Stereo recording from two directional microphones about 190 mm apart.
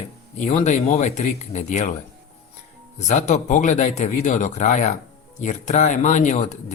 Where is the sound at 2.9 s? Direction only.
40° left (ahead or behind).